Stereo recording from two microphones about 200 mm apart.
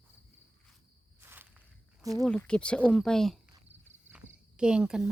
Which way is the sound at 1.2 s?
10° right (ahead or behind).